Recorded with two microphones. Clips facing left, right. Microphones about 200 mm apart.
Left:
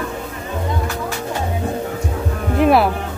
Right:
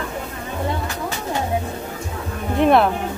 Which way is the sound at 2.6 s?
5° left (ahead or behind).